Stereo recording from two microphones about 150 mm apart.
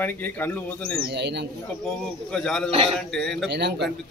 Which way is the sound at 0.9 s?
90° right.